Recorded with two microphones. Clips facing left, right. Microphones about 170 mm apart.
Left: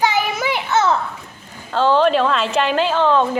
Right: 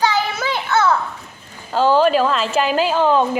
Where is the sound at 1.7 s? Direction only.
10° right (ahead or behind).